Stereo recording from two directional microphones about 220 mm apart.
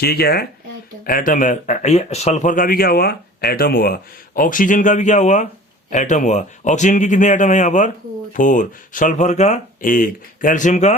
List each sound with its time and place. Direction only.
0.0 s speech: 45° left (ahead or behind)